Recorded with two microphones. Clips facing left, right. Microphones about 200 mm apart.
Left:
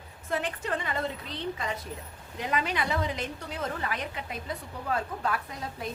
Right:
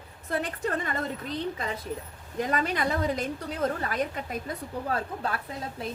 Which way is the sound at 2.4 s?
45° right (ahead or behind).